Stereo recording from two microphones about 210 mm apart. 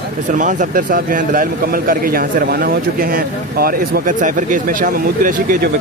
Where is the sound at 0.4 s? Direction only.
35° right (ahead or behind).